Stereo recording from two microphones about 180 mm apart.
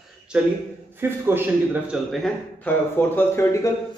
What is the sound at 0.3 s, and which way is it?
A man's voice, 5° right (ahead or behind).